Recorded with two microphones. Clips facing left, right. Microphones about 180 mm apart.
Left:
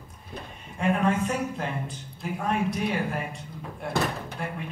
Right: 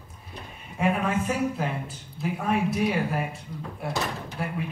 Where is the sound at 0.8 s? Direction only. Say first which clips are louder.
Left 1 dB; 5° right (ahead or behind).